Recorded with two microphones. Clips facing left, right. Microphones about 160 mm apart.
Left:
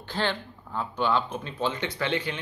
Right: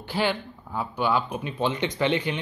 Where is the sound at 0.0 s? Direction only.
10° right (ahead or behind).